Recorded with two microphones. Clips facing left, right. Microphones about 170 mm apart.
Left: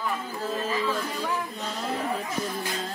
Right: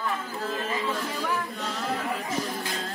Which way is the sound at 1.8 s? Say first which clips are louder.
Left 1 dB; 35° left (ahead or behind).